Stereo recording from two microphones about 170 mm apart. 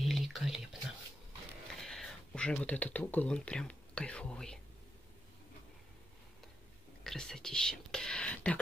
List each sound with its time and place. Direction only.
0.0 s whispering: centre (ahead or behind)
1.8 s speech: 5° left (ahead or behind)
7.0 s speech: centre (ahead or behind)